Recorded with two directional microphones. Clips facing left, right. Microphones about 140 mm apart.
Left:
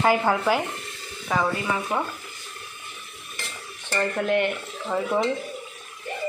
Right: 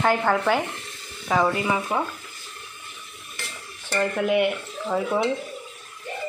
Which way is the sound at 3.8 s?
5° right (ahead or behind).